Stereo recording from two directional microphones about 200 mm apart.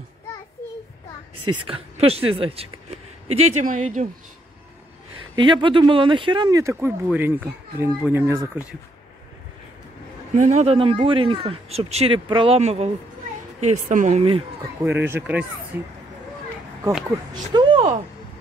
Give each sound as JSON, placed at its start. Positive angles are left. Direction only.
{"t": 1.4, "sound": "speech", "side_deg": -25}
{"t": 5.3, "sound": "speech", "side_deg": -25}
{"t": 10.3, "sound": "speech", "side_deg": -35}
{"t": 14.9, "sound": "speech", "side_deg": -10}
{"t": 17.3, "sound": "a sound", "side_deg": -20}